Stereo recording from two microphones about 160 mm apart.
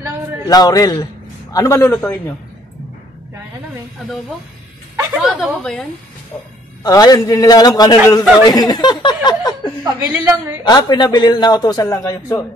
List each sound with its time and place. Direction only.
0.5 s a man's voice: 25° left (ahead or behind)
5.1 s speech: centre (ahead or behind)
6.8 s a man's voice: 25° left (ahead or behind)
9.0 s a sound: 25° left (ahead or behind)
9.9 s a woman's voice: 15° right (ahead or behind)
10.6 s a man's voice: 25° left (ahead or behind)